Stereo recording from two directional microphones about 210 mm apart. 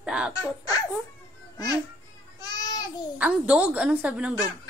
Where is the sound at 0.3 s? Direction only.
15° left (ahead or behind).